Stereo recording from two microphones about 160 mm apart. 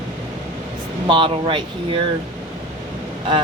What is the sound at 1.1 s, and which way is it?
Speech, 30° right (ahead or behind).